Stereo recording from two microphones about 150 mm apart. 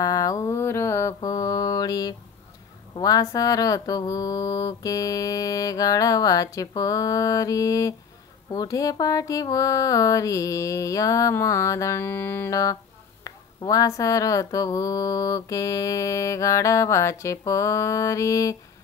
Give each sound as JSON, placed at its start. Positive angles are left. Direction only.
{"t": 0.0, "sound": "mantra", "side_deg": 25}
{"t": 3.0, "sound": "speech", "side_deg": 25}